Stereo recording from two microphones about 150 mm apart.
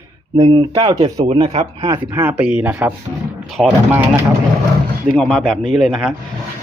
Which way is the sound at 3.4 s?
Centre (ahead or behind).